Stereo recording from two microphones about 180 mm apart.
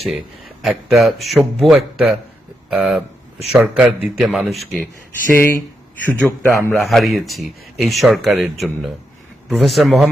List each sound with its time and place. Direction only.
0.6 s speech: centre (ahead or behind)
5.3 s speech: 10° left (ahead or behind)